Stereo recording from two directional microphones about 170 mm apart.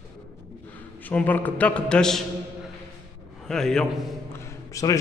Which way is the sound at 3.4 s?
5° left (ahead or behind).